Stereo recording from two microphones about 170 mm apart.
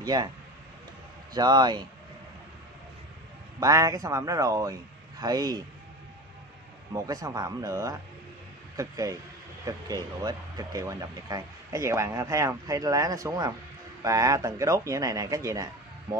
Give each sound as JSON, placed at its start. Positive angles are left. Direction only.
{"t": 0.0, "sound": "speech", "side_deg": -25}
{"t": 1.3, "sound": "speech", "side_deg": -25}
{"t": 3.5, "sound": "speech", "side_deg": -20}
{"t": 6.9, "sound": "speech", "side_deg": -20}